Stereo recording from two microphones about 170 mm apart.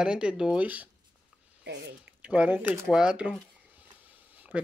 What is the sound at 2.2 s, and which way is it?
Speech, 5° right (ahead or behind).